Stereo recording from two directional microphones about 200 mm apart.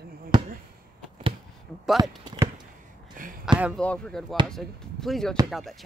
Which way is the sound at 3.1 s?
40° right (ahead or behind).